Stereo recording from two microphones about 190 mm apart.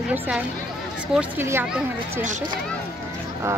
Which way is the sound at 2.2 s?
40° right (ahead or behind).